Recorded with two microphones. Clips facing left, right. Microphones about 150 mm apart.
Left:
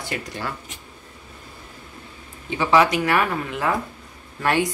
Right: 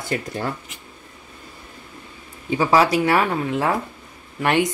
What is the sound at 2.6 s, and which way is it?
A woman's voice, 35° right (ahead or behind).